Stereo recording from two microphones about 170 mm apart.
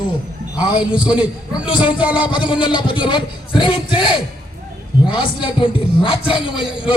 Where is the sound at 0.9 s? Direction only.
30° left (ahead or behind).